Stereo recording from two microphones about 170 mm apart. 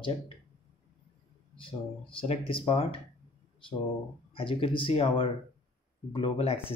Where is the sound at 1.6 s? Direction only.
30° left (ahead or behind).